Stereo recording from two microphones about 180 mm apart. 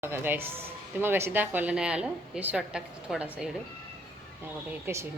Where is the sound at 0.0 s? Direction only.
15° right (ahead or behind).